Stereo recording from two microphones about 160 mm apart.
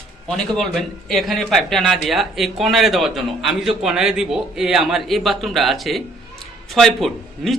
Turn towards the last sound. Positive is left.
turn(degrees=0)  # may be behind; listen again after turning